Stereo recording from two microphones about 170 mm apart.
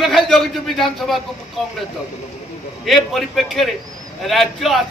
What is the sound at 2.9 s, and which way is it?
A man's voice, centre (ahead or behind).